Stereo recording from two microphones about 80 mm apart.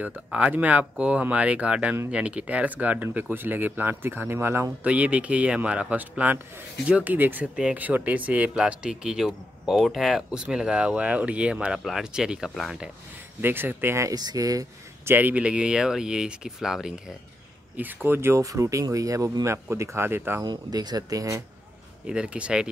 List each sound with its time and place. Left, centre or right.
0.0 s speech: centre
4.8 s speech: centre
12.4 s speech: centre
13.4 s speech: right
14.1 s speech: right
15.0 s speech: right; by 16.9 s centre
17.7 s speech: right
20.4 s speech: right
22.0 s speech: centre